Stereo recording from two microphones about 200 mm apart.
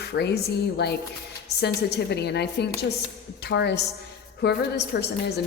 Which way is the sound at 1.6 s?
55° left (ahead or behind).